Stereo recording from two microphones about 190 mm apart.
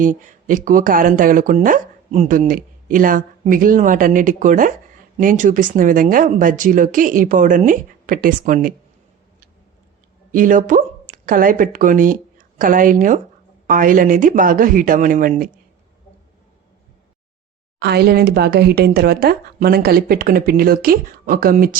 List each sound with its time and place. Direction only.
0.0 s speech: 45° right (ahead or behind)
10.3 s speech: 45° right (ahead or behind)
17.7 s speech: 60° right (ahead or behind)